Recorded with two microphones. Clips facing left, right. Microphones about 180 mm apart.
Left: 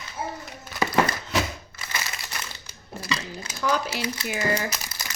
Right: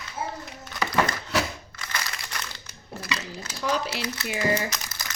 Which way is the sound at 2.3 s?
10° left (ahead or behind).